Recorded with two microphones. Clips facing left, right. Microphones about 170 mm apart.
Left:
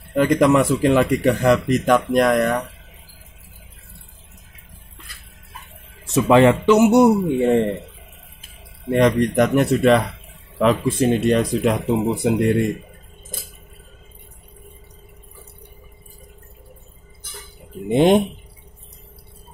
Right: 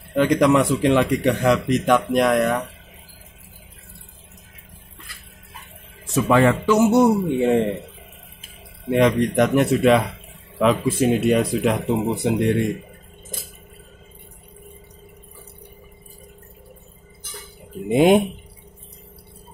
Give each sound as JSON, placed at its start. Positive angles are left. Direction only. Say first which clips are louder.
{"t": 0.1, "sound": "a man's voice", "louder": "left 1 dB", "side_deg": 0}
{"t": 6.2, "sound": "speech", "louder": "left 4 dB", "side_deg": 25}
{"t": 7.4, "sound": "a man's voice", "louder": "left 1 dB", "side_deg": 0}
{"t": 8.9, "sound": "a man's voice", "louder": "left 1 dB", "side_deg": 0}
{"t": 17.8, "sound": "speech", "louder": "even", "side_deg": -10}